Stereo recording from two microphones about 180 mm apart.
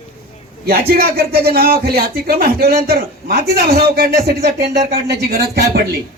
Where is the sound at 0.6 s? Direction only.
55° right (ahead or behind).